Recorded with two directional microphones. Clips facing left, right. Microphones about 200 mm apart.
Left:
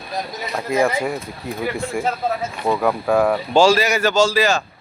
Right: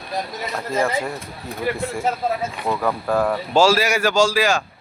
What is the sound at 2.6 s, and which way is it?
Speech, 10° left (ahead or behind).